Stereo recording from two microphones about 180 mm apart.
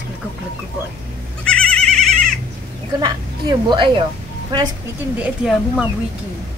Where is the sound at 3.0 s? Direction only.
25° right (ahead or behind).